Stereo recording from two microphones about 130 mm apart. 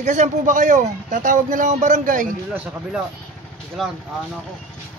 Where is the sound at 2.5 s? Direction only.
10° right (ahead or behind).